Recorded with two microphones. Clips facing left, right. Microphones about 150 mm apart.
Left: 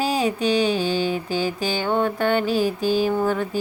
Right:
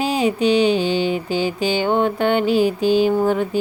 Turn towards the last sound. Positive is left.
turn(degrees=-20)  # may be behind; listen again after turning